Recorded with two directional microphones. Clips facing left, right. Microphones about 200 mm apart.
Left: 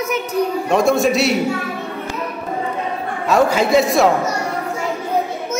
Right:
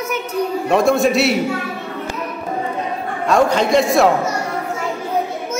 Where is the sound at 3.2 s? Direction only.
5° left (ahead or behind).